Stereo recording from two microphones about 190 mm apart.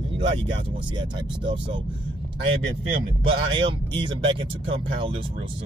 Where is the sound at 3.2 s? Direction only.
25° right (ahead or behind).